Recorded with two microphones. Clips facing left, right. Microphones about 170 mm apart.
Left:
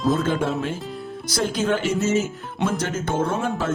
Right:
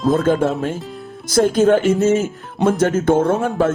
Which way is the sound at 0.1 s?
50° right (ahead or behind).